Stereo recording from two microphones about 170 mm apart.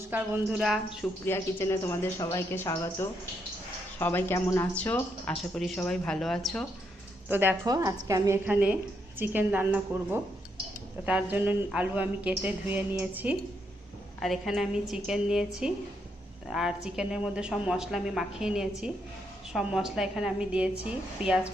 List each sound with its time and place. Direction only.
0.1 s a woman's voice: 10° right (ahead or behind)
1.2 s speech: 15° left (ahead or behind)
7.3 s a woman's voice: 10° right (ahead or behind)
7.7 s a woman's voice: 20° right (ahead or behind); by 21.3 s 5° right (ahead or behind)